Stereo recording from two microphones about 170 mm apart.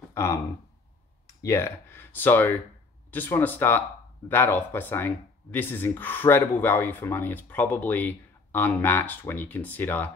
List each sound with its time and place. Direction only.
0.1 s speech: 15° left (ahead or behind)